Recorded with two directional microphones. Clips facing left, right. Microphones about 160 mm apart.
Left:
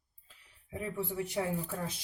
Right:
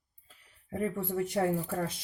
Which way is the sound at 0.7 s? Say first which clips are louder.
Right 5 dB; 50° right (ahead or behind).